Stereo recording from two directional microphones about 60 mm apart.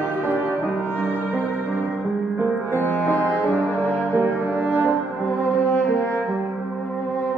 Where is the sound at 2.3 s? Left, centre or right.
Right.